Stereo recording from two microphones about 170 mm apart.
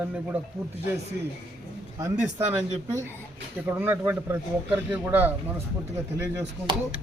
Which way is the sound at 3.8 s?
15° right (ahead or behind).